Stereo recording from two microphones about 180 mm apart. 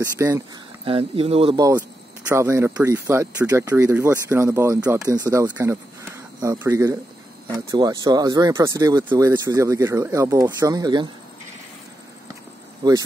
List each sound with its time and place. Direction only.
0.0 s speech: 15° right (ahead or behind)
0.8 s speech: 30° right (ahead or behind)
1.8 s speech: 10° right (ahead or behind)
12.8 s speech: 20° right (ahead or behind)